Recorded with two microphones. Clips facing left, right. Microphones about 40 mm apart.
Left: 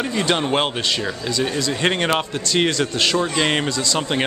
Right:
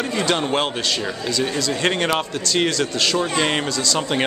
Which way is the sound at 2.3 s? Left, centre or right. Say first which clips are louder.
Left 1 dB; left.